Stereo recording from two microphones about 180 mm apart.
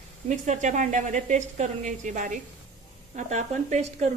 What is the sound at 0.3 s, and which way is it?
A woman's voice, 40° right (ahead or behind).